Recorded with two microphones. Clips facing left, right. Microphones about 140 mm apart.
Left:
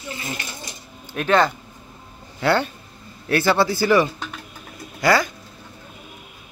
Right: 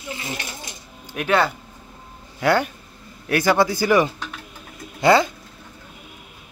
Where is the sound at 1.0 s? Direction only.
15° right (ahead or behind).